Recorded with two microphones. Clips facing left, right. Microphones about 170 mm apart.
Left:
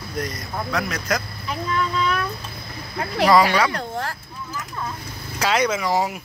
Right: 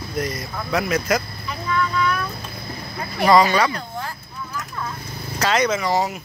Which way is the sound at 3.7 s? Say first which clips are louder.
Left 3 dB; 70° left (ahead or behind).